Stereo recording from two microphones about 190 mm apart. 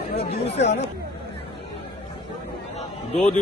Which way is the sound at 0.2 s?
35° left (ahead or behind).